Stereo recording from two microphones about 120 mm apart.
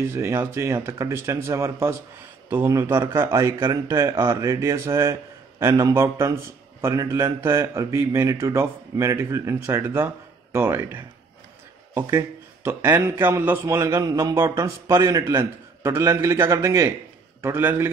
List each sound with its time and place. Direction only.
0.0 s a man's voice: 20° right (ahead or behind)